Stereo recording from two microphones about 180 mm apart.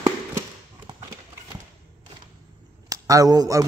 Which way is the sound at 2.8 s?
20° right (ahead or behind).